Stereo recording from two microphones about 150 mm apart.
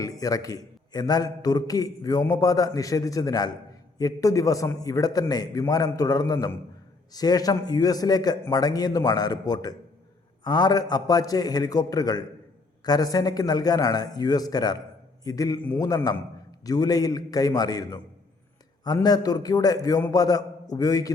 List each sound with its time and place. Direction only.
0.0 s a man's voice: 25° left (ahead or behind)
15.6 s a man's voice: 15° left (ahead or behind)
19.0 s a man's voice: 25° left (ahead or behind)